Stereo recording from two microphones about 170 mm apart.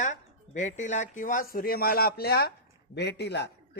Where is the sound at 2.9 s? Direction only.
90° left.